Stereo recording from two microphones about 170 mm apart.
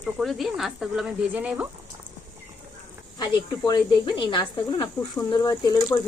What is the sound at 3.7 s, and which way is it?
Speech, 25° left (ahead or behind).